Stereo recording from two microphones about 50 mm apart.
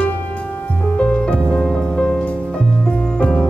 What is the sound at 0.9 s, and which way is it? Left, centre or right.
Music, left.